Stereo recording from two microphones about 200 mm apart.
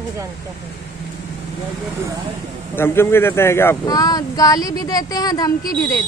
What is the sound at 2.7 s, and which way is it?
Speech, 10° left (ahead or behind).